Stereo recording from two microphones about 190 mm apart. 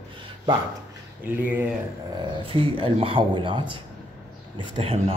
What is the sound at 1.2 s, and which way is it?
Speech, 10° right (ahead or behind).